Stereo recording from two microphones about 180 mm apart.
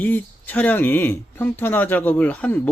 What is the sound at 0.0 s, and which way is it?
Speech, 10° left (ahead or behind).